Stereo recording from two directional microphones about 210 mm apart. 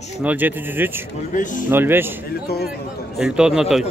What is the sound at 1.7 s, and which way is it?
Speech, 10° right (ahead or behind).